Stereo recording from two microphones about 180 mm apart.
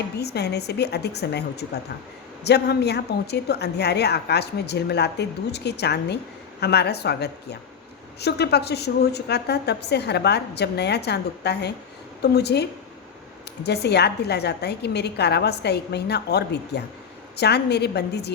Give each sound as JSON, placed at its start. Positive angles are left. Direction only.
{"t": 0.2, "sound": "a woman's voice", "side_deg": 65}
{"t": 13.7, "sound": "a woman's voice", "side_deg": 65}